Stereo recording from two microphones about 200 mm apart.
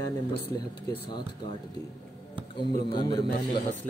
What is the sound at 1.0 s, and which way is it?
Speech, 20° left (ahead or behind).